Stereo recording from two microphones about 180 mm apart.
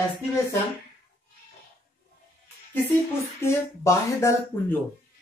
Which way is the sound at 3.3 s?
15° left (ahead or behind).